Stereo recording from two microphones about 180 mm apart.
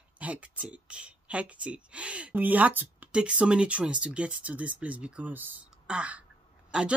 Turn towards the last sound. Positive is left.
turn(degrees=-5)  # may be behind; listen again after turning